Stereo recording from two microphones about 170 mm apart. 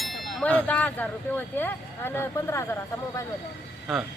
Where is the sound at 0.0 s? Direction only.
Centre (ahead or behind); by 2.7 s 15° left (ahead or behind).